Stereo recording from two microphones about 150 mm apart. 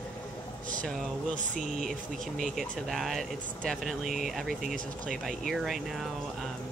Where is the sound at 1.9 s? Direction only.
Centre (ahead or behind).